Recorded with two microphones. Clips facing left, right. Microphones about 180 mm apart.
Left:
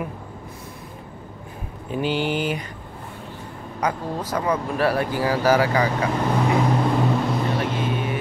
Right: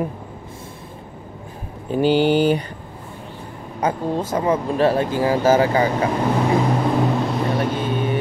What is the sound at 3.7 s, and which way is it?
Speech, 25° right (ahead or behind).